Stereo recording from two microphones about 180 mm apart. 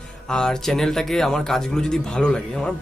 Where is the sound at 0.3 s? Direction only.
5° left (ahead or behind).